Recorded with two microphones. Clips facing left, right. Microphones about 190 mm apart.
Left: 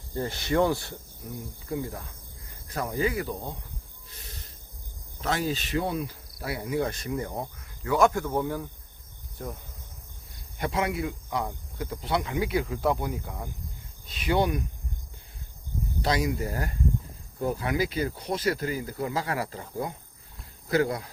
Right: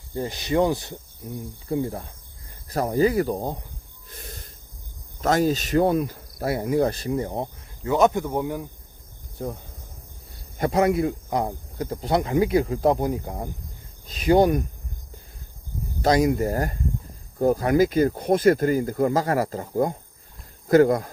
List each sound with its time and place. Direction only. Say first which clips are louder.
0.1 s cricket: right 3 dB; 15° right (ahead or behind)
1.6 s speech: right 7 dB; 30° right (ahead or behind); by 3.6 s 45° right (ahead or behind)
5.2 s speech: right 8 dB; 45° right (ahead or behind)
7.9 s cricket: right 3 dB; 20° right (ahead or behind)
10.6 s speech: right 8 dB; 40° right (ahead or behind)
16.0 s speech: right 8 dB; 45° right (ahead or behind)